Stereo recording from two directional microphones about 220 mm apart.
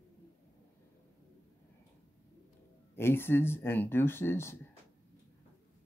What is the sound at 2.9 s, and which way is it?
Speech, 10° left (ahead or behind).